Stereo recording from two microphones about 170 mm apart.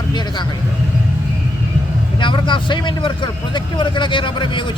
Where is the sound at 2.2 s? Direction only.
30° left (ahead or behind).